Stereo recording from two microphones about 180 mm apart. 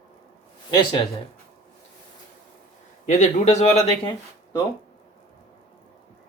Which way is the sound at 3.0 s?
40° left (ahead or behind).